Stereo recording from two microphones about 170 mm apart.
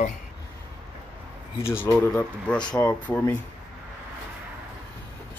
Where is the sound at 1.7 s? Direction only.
10° left (ahead or behind).